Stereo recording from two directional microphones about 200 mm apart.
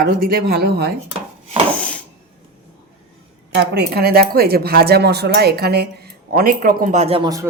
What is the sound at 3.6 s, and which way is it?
Speech, 55° right (ahead or behind).